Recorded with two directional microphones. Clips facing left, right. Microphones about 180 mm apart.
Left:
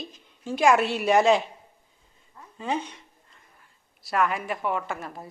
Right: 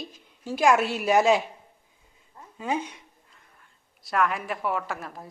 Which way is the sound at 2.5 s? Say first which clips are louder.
Even; 10° right (ahead or behind).